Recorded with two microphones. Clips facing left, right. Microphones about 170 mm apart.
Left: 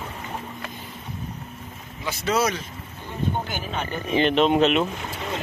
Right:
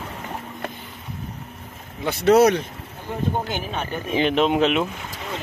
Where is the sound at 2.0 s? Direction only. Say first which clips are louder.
Right 8 dB; 60° right (ahead or behind).